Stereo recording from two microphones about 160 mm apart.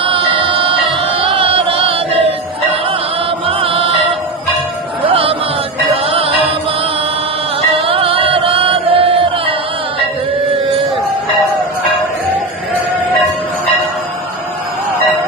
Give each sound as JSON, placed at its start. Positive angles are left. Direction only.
{"t": 0.0, "sound": "music", "side_deg": -35}
{"t": 3.4, "sound": "music", "side_deg": -35}
{"t": 5.0, "sound": "music", "side_deg": -35}
{"t": 7.7, "sound": "music", "side_deg": -35}